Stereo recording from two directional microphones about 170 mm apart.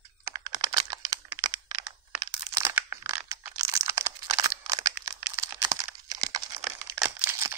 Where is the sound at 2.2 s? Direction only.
20° right (ahead or behind).